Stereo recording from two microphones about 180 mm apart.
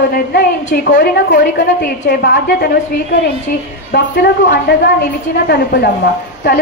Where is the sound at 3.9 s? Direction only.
70° left (ahead or behind).